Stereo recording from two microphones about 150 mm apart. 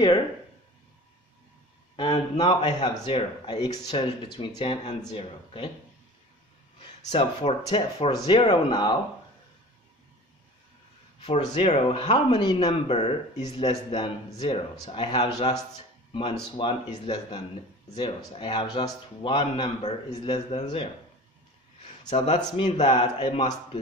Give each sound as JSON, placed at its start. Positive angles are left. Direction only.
{"t": 2.0, "sound": "speech", "side_deg": 35}
{"t": 7.1, "sound": "speech", "side_deg": 45}
{"t": 7.6, "sound": "speech", "side_deg": 30}
{"t": 11.2, "sound": "speech", "side_deg": 35}
{"t": 12.5, "sound": "speech", "side_deg": 40}
{"t": 20.1, "sound": "speech", "side_deg": 30}
{"t": 22.1, "sound": "speech", "side_deg": 40}